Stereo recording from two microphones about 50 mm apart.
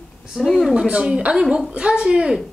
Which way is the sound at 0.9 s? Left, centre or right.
Right.